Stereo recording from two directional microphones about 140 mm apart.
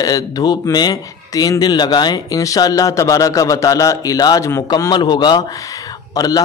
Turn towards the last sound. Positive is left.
turn(degrees=25)  # may be behind; listen again after turning